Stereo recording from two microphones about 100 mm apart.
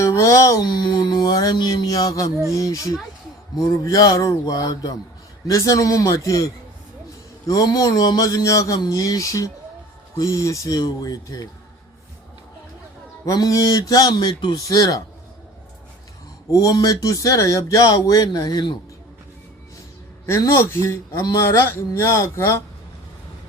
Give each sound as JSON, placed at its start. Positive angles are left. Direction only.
{"t": 0.0, "sound": "a sound", "side_deg": 30}
{"t": 0.7, "sound": "speech", "side_deg": 45}
{"t": 13.2, "sound": "speech", "side_deg": 35}
{"t": 16.5, "sound": "speech", "side_deg": 35}
{"t": 20.2, "sound": "speech", "side_deg": 30}